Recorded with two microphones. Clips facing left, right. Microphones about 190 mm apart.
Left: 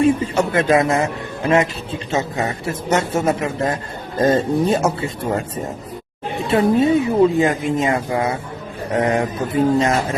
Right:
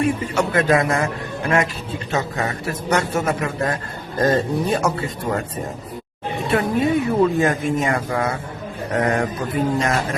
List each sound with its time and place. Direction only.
0.0 s speech: 25° left (ahead or behind)
6.5 s speech: 25° left (ahead or behind)